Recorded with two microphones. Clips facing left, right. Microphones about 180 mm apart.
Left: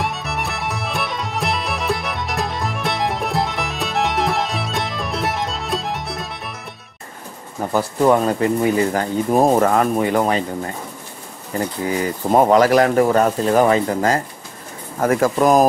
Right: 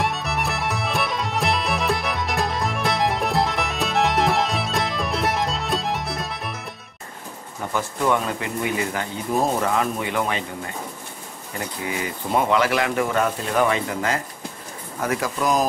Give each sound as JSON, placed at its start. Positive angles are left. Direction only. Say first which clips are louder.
{"t": 0.0, "sound": "music", "louder": "even", "side_deg": 0}
{"t": 7.7, "sound": "speech", "louder": "left 7 dB", "side_deg": 40}